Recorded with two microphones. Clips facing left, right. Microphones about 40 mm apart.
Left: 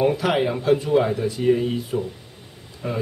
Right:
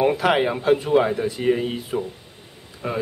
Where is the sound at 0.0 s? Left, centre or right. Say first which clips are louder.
Right 1 dB; centre.